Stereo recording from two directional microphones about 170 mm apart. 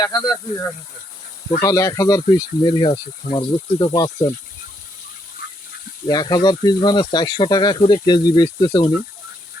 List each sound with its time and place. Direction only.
0.0 s speech: 25° left (ahead or behind)
6.1 s speech: 25° left (ahead or behind)